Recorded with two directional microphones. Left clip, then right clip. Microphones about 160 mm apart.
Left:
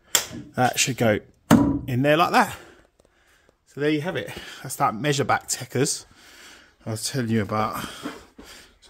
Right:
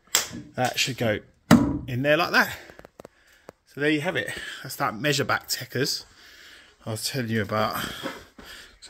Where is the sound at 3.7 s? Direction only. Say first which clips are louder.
Even; 30° left (ahead or behind); by 6.5 s 55° left (ahead or behind).